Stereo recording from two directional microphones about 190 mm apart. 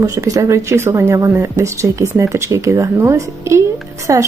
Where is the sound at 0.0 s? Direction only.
15° right (ahead or behind).